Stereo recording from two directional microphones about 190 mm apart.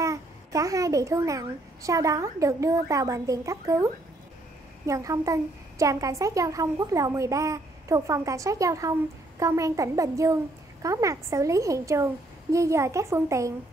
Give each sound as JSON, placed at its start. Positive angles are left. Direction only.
{"t": 0.0, "sound": "a woman's voice", "side_deg": -15}